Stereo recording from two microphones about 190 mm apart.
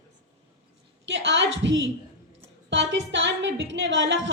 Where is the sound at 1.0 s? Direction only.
75° right (ahead or behind).